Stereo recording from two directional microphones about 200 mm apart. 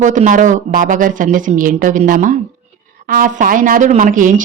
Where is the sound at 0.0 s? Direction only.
40° right (ahead or behind).